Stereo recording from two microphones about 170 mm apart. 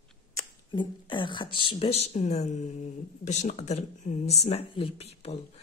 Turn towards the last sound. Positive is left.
turn(degrees=40)  # may be behind; listen again after turning